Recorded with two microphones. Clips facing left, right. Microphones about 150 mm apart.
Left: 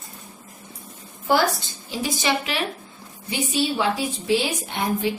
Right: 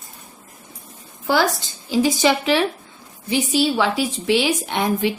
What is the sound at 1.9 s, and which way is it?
A woman's voice, 90° right.